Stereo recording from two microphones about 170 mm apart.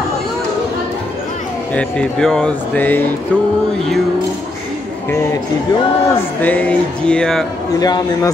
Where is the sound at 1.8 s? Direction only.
5° left (ahead or behind).